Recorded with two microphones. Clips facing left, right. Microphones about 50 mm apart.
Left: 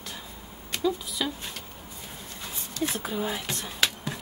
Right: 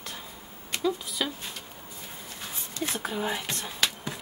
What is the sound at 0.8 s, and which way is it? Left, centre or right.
Speech, centre.